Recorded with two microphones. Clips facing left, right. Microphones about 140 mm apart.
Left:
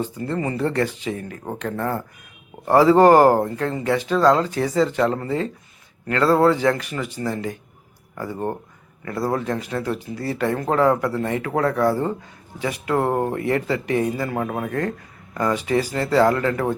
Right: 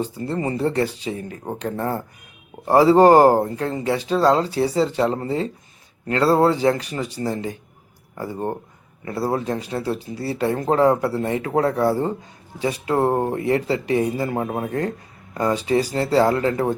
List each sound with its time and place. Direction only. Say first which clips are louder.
0.2 s speech: right 1 dB; 25° right (ahead or behind)